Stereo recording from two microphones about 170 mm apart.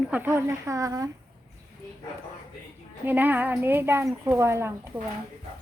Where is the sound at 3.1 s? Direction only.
10° right (ahead or behind).